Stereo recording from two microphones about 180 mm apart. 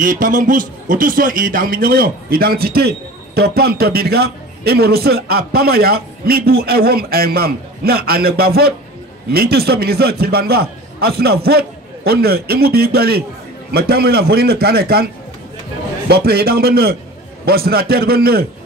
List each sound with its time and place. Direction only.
0.0 s a man's voice: 50° right (ahead or behind)
16.1 s a man's voice: 60° right (ahead or behind)